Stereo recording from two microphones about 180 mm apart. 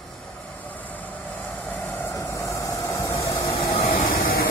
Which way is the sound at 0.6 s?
10° left (ahead or behind).